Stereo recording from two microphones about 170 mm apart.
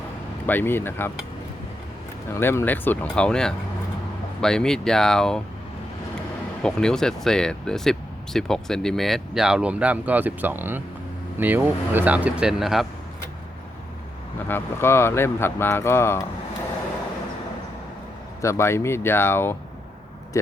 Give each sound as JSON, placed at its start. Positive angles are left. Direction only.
{"t": 0.4, "sound": "speech", "side_deg": 10}
{"t": 2.3, "sound": "speech", "side_deg": 15}
{"t": 14.4, "sound": "speech", "side_deg": 15}
{"t": 18.4, "sound": "speech", "side_deg": 15}